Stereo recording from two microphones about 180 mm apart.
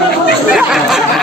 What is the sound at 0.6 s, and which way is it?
Chatter, centre (ahead or behind).